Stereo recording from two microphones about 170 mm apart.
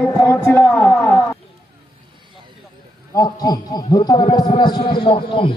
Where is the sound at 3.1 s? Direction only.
20° left (ahead or behind).